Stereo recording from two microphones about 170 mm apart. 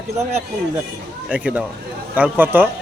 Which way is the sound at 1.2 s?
5° right (ahead or behind).